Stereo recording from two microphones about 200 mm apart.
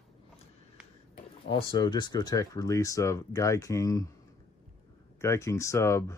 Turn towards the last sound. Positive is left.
turn(degrees=15)  # may be behind; listen again after turning